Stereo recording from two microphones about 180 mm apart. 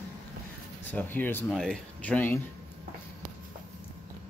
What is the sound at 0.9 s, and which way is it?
Speech, 10° left (ahead or behind).